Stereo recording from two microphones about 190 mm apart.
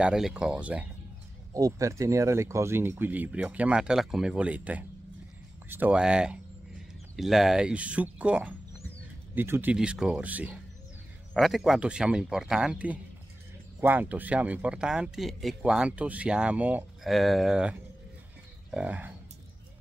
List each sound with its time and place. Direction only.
0.0 s speech: 5° right (ahead or behind)
1.5 s speech: 15° right (ahead or behind)